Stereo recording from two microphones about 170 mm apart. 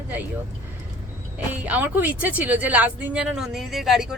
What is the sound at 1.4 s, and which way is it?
Speech, 10° right (ahead or behind).